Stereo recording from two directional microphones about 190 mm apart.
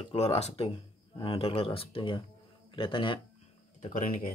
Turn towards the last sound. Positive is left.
turn(degrees=45)  # may be behind; listen again after turning